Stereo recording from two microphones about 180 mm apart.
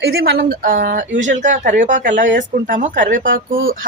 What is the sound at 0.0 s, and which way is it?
A woman's voice, 60° right (ahead or behind).